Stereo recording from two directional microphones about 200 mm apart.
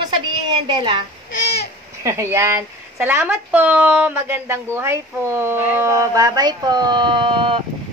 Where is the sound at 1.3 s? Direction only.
55° left (ahead or behind).